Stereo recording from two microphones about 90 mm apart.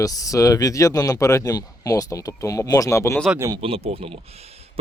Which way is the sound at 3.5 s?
90° right.